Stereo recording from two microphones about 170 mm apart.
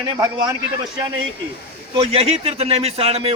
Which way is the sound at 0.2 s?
25° right (ahead or behind).